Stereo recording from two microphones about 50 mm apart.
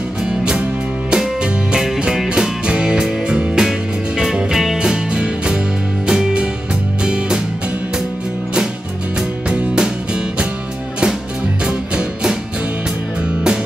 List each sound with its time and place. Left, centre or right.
0.2 s music: centre
9.5 s music: centre
11.6 s music: centre